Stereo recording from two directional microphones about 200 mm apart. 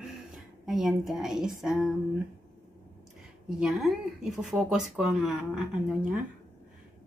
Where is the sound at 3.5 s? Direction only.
5° right (ahead or behind).